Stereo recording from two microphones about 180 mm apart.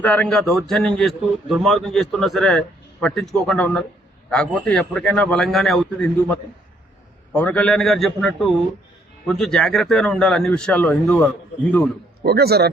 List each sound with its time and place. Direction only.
0.0 s a man's voice: 5° left (ahead or behind)
12.2 s speech: 60° right (ahead or behind)